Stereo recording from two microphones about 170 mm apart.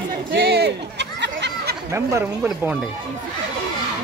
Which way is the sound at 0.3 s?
80° right.